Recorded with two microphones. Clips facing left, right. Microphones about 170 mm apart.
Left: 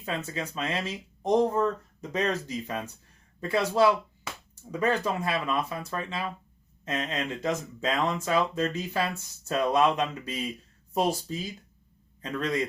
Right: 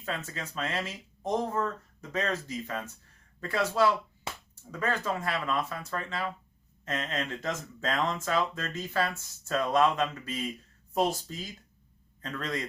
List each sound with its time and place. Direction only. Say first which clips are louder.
0.0 s speech: left 4 dB; 15° left (ahead or behind)